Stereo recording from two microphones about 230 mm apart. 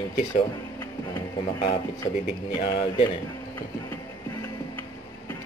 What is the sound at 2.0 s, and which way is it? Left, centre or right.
Speech, left.